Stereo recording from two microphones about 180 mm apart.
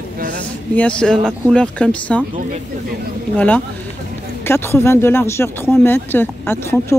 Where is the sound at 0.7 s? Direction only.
5° left (ahead or behind).